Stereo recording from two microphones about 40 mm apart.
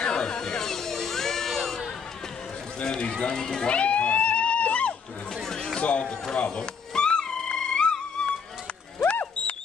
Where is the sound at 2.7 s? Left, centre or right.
Left.